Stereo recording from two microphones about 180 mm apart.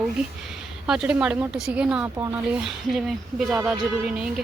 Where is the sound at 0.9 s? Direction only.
5° right (ahead or behind).